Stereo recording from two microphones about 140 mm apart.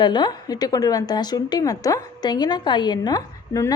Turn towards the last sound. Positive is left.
turn(degrees=25)  # may be behind; listen again after turning